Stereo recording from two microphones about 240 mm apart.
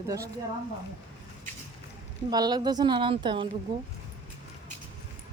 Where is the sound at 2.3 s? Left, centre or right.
Centre.